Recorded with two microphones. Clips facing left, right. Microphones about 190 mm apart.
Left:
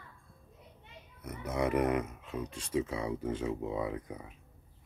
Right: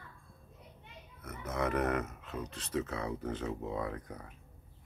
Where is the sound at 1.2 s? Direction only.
10° left (ahead or behind).